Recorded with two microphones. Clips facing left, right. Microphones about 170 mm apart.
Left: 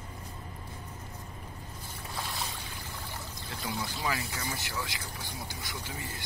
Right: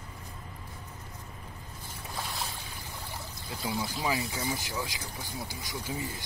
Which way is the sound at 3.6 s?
25° right (ahead or behind).